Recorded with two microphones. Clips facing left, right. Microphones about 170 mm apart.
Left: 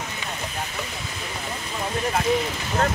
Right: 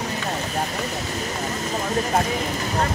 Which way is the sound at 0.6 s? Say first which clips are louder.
Right 6 dB; 40° right (ahead or behind).